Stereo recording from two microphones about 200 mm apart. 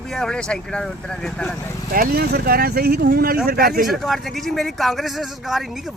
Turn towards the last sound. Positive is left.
turn(degrees=0)  # may be behind; listen again after turning